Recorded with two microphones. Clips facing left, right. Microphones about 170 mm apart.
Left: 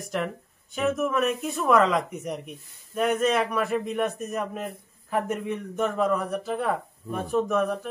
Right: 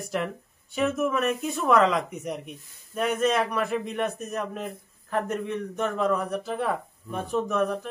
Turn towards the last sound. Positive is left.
turn(degrees=0)  # may be behind; listen again after turning